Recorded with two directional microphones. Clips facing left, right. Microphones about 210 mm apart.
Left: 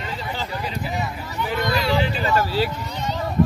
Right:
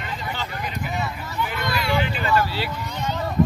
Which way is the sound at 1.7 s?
35° left (ahead or behind).